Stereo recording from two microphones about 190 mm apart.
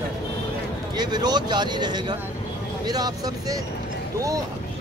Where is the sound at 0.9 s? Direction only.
20° right (ahead or behind).